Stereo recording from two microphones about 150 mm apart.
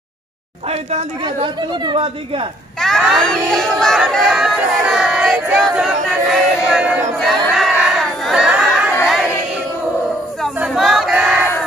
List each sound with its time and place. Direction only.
0.7 s speech: 40° right (ahead or behind)
2.8 s speech: centre (ahead or behind)
3.8 s crowd: centre (ahead or behind)
9.0 s choir: centre (ahead or behind)
10.4 s a sound: centre (ahead or behind)